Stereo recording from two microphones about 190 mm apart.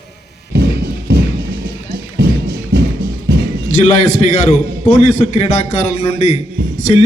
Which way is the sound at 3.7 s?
40° left (ahead or behind).